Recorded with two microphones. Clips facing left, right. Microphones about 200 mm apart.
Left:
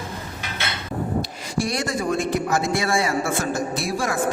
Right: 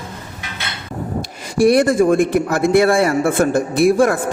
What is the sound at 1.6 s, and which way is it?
A man's voice, 55° right (ahead or behind).